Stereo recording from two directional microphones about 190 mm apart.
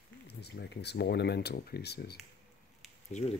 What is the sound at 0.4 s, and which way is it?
Speech, 60° left (ahead or behind).